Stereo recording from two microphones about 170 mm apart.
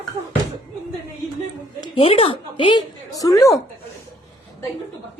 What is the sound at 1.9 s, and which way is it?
A woman's voice, 35° left (ahead or behind).